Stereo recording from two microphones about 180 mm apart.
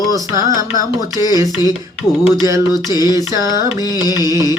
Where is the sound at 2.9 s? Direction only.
20° left (ahead or behind).